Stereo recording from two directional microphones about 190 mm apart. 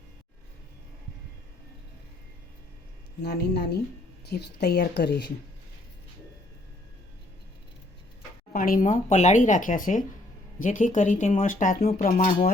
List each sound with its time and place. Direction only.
3.2 s a woman's voice: 60° left (ahead or behind)
8.5 s speech: 45° left (ahead or behind)